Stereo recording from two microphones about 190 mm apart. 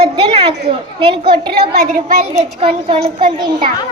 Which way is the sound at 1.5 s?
55° right (ahead or behind).